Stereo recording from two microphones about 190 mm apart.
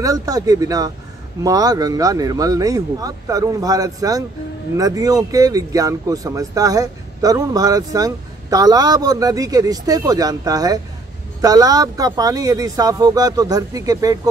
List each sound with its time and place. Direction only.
0.0 s speech: 20° right (ahead or behind)